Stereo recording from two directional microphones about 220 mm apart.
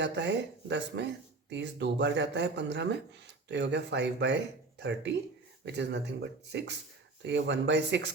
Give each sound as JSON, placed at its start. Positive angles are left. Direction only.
{"t": 0.0, "sound": "speech", "side_deg": -50}